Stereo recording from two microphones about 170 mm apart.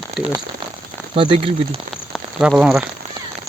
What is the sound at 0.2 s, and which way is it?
Speech, centre (ahead or behind).